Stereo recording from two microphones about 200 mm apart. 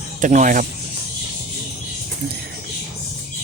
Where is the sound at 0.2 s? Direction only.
40° right (ahead or behind).